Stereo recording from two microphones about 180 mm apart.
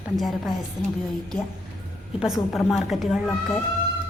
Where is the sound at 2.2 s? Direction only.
Centre (ahead or behind).